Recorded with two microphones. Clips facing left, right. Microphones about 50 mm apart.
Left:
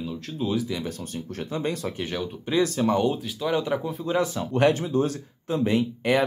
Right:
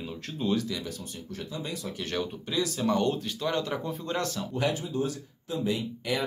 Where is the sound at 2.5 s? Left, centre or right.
Left.